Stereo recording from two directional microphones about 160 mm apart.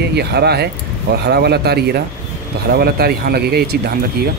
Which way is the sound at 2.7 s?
80° right.